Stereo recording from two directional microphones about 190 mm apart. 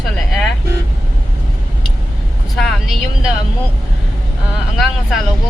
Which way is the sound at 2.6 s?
Centre (ahead or behind).